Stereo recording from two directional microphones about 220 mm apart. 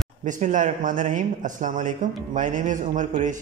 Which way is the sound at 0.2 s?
35° right (ahead or behind).